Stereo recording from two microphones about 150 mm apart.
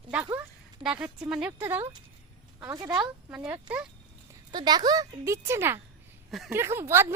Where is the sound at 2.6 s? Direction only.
20° right (ahead or behind).